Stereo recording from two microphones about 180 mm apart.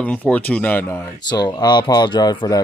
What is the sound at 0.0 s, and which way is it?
Speech, 10° left (ahead or behind).